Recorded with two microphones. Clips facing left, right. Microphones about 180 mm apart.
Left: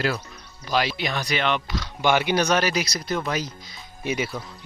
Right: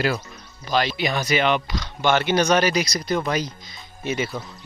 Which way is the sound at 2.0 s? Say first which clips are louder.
Right 1 dB; 10° left (ahead or behind).